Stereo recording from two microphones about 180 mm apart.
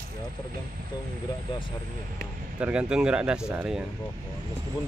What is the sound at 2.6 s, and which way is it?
Speech, 5° right (ahead or behind).